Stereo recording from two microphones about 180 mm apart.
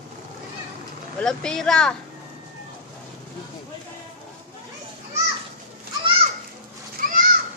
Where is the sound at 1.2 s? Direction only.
5° left (ahead or behind).